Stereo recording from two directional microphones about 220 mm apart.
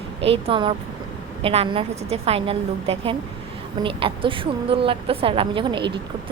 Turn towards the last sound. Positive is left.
turn(degrees=-20)  # may be behind; listen again after turning